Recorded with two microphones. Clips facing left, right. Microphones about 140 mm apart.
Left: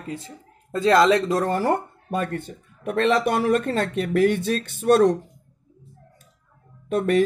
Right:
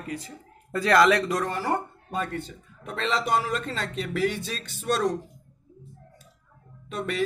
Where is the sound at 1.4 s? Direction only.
45° left (ahead or behind).